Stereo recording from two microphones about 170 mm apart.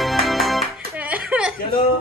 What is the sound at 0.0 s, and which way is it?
Music, centre (ahead or behind).